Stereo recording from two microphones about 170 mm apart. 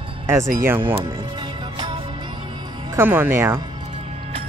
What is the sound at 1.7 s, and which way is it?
Music, 30° right (ahead or behind).